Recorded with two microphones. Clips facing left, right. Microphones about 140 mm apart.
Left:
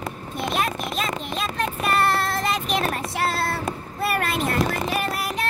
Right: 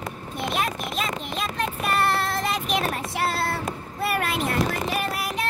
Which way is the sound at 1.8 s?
40° left (ahead or behind).